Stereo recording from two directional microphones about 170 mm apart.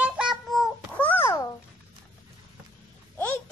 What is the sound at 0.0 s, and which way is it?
Child singing, 5° right (ahead or behind).